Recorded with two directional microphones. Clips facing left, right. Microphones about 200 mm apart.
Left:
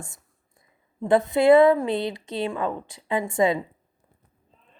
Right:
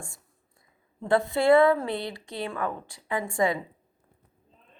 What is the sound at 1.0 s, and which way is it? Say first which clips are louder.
A woman's voice: left 4 dB; 20° left (ahead or behind).